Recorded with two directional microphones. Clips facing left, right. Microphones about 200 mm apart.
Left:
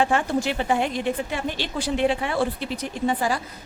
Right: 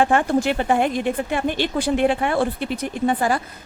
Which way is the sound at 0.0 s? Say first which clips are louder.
Right 4 dB; 55° right (ahead or behind).